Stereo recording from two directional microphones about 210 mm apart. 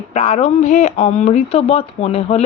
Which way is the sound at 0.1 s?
30° left (ahead or behind).